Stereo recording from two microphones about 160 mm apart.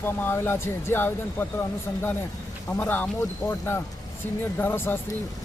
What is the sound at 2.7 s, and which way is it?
Speech, 10° left (ahead or behind).